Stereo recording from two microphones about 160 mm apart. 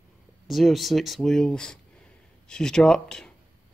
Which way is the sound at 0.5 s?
Centre (ahead or behind).